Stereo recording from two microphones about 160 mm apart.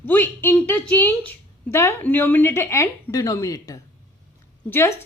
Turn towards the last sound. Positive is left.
turn(degrees=15)  # may be behind; listen again after turning